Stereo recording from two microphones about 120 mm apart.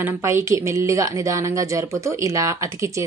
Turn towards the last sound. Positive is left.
turn(degrees=-25)  # may be behind; listen again after turning